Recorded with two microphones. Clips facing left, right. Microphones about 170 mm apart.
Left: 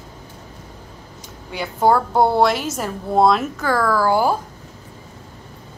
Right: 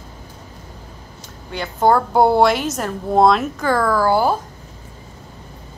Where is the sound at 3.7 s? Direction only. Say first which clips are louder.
Even; 15° right (ahead or behind).